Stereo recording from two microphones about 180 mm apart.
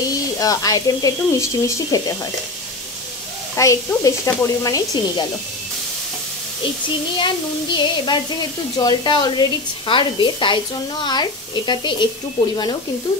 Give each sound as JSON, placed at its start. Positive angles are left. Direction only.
{"t": 0.4, "sound": "a woman's voice", "side_deg": 20}
{"t": 3.5, "sound": "a woman's voice", "side_deg": 15}
{"t": 7.2, "sound": "a woman's voice", "side_deg": 25}